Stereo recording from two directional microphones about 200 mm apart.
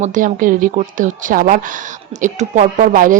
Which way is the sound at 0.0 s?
40° right (ahead or behind).